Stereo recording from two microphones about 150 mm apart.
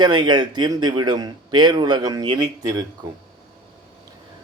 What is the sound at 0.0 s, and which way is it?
Speech, 30° right (ahead or behind).